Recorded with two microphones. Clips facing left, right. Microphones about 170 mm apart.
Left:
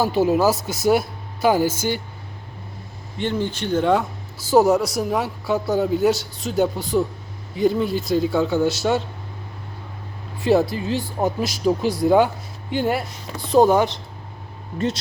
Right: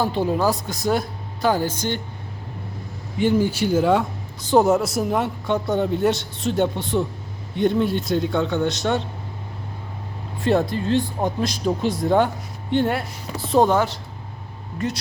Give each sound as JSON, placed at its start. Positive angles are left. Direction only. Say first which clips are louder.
{"t": 0.0, "sound": "speech", "louder": "left 3 dB", "side_deg": 5}
{"t": 3.2, "sound": "speech", "louder": "right 5 dB", "side_deg": -10}
{"t": 10.4, "sound": "speech", "louder": "left 2 dB", "side_deg": 0}
{"t": 13.7, "sound": "speech", "louder": "left 2 dB", "side_deg": 20}